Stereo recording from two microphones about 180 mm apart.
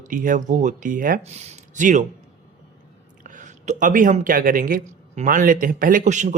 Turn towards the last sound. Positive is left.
turn(degrees=-40)  # may be behind; listen again after turning